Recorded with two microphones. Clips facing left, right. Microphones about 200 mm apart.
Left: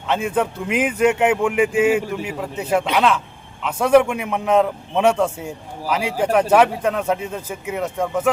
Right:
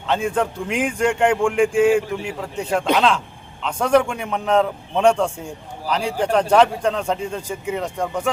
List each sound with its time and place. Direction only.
0.1 s a man's voice: 5° left (ahead or behind)